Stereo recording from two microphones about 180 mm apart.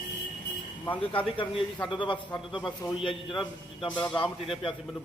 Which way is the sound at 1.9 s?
25° left (ahead or behind).